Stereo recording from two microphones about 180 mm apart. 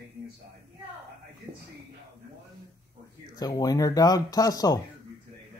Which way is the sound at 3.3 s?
20° left (ahead or behind).